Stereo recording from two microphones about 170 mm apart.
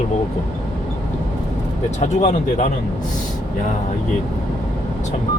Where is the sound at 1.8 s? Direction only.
45° left (ahead or behind).